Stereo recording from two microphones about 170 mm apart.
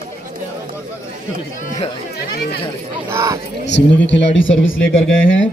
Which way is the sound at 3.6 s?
90° left.